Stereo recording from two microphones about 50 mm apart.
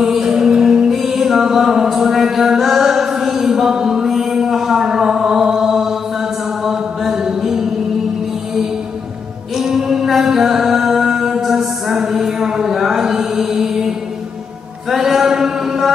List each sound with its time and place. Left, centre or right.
0.0 s music: centre
6.6 s mantra: centre
9.6 s mantra: centre
14.9 s a sound: centre